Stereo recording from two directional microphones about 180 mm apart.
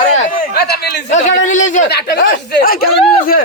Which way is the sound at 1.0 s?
40° left (ahead or behind).